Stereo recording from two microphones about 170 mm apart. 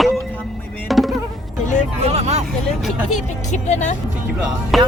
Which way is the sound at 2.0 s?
40° right (ahead or behind).